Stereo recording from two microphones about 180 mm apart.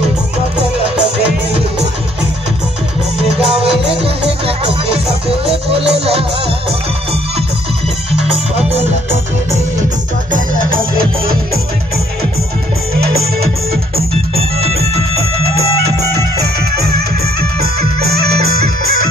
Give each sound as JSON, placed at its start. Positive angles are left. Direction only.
{"t": 3.6, "sound": "music", "side_deg": -30}
{"t": 14.3, "sound": "music", "side_deg": -35}
{"t": 17.6, "sound": "music", "side_deg": -60}